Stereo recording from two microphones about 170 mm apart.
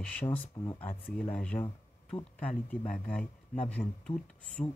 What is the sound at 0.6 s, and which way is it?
Speech, 25° left (ahead or behind).